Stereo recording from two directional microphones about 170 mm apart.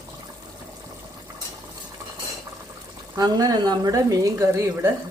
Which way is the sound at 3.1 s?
25° right (ahead or behind).